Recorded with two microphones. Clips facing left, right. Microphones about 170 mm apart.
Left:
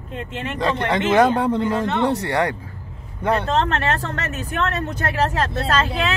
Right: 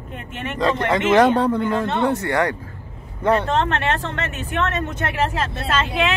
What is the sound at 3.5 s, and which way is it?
Speech, 40° left (ahead or behind).